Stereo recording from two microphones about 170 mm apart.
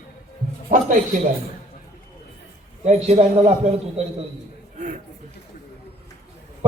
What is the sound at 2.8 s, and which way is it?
Speech, 40° right (ahead or behind).